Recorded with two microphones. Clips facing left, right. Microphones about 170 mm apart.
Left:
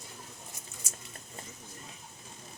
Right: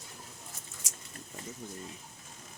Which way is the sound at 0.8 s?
90° right.